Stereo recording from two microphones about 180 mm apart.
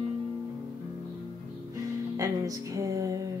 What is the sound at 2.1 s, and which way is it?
Music, 20° right (ahead or behind).